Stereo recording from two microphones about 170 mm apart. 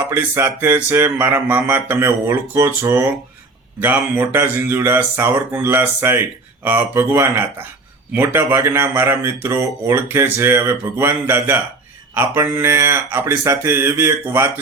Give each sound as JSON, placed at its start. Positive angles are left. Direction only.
{"t": 0.0, "sound": "speech", "side_deg": -10}